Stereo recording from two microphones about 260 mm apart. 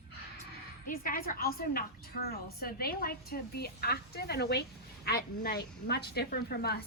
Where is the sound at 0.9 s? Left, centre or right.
Left.